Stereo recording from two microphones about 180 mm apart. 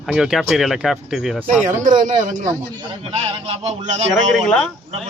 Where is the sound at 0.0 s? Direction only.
Centre (ahead or behind).